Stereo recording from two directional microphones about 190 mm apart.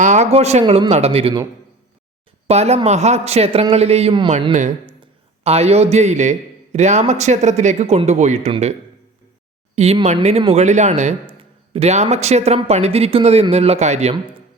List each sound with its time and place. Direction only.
0.0 s speech: 40° right (ahead or behind)
2.5 s speech: 35° right (ahead or behind)
4.5 s a man's voice: 40° right (ahead or behind)
9.7 s speech: 35° right (ahead or behind)